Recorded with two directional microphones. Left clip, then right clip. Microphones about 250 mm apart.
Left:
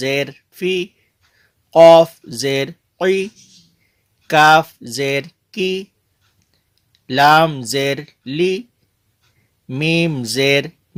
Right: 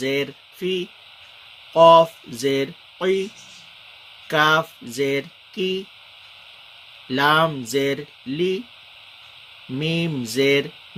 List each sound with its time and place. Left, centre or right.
0.0 s speech: left
4.3 s a sound: left
7.1 s speech: left
9.7 s speech: left